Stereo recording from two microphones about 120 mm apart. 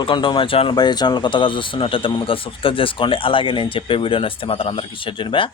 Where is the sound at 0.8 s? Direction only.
35° left (ahead or behind).